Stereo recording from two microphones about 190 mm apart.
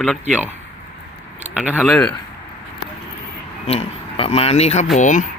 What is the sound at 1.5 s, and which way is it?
Speech, 5° right (ahead or behind).